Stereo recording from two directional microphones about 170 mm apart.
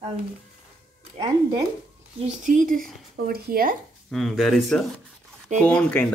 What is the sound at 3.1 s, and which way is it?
Speech, 65° right (ahead or behind).